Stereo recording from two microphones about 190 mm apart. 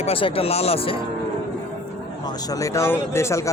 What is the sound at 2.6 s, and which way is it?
Speech, 15° left (ahead or behind).